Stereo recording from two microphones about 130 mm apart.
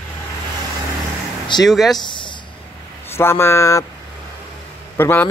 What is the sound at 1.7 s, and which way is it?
Speech, centre (ahead or behind).